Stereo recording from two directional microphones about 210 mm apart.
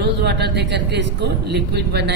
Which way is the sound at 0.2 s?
55° right (ahead or behind).